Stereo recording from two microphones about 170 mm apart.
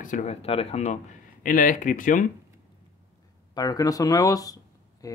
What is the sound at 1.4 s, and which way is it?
Speech, 55° left (ahead or behind).